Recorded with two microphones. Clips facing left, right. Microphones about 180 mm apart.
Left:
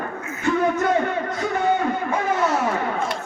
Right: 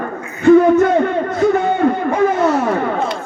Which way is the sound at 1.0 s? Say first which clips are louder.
Right 8 dB; 55° right (ahead or behind).